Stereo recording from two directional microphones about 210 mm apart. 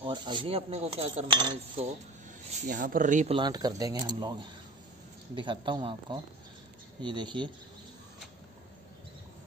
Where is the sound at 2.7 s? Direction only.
40° right (ahead or behind).